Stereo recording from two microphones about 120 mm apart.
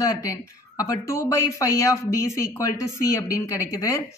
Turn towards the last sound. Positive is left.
turn(degrees=25)  # may be behind; listen again after turning